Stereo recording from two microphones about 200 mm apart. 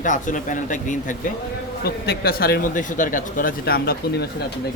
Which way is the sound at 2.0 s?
50° left (ahead or behind).